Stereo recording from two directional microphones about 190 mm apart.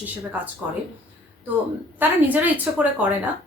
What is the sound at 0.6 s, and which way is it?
Speech, 10° right (ahead or behind).